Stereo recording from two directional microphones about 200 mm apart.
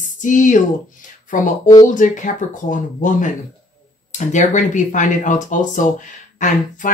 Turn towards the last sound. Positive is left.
turn(degrees=40)  # may be behind; listen again after turning